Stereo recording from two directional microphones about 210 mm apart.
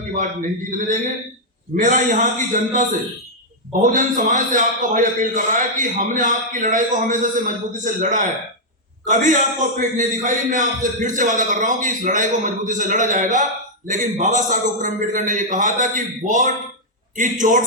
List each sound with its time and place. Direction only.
0.7 s a man's voice: 40° right (ahead or behind)